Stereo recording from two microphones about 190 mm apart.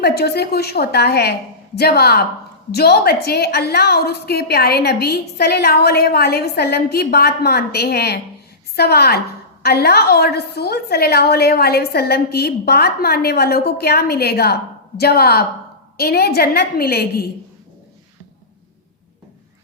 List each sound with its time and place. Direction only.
0.0 s a woman's voice: 55° left (ahead or behind)